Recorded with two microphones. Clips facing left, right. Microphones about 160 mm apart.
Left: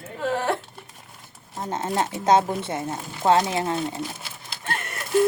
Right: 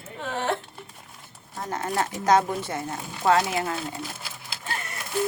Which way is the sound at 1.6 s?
25° left (ahead or behind).